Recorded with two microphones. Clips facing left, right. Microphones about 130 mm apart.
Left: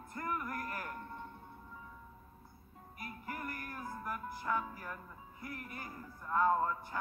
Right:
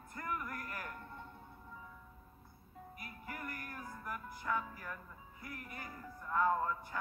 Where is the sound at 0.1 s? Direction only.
30° left (ahead or behind).